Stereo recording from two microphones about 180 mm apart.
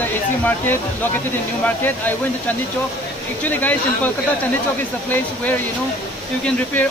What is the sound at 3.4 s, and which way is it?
Speech, 10° left (ahead or behind).